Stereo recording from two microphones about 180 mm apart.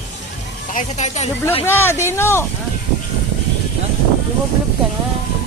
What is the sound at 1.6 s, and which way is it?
Speech, 15° left (ahead or behind).